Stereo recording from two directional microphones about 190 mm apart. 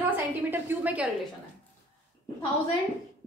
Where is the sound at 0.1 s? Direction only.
10° right (ahead or behind).